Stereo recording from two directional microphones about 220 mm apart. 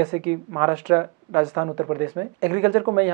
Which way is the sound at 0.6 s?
15° right (ahead or behind).